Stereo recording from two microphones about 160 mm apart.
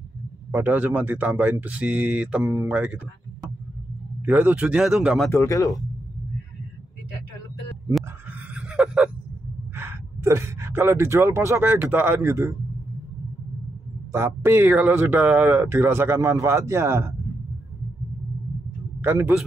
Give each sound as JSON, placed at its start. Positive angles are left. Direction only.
{"t": 0.5, "sound": "speech", "side_deg": -10}
{"t": 4.3, "sound": "speech", "side_deg": -10}
{"t": 5.3, "sound": "speech", "side_deg": 20}
{"t": 8.5, "sound": "a sound", "side_deg": -5}
{"t": 9.8, "sound": "speech", "side_deg": -15}
{"t": 14.1, "sound": "speech", "side_deg": -15}
{"t": 18.9, "sound": "a man's voice", "side_deg": -15}